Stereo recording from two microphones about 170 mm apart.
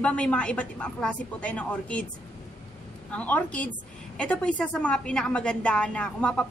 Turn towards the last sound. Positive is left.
turn(degrees=5)  # may be behind; listen again after turning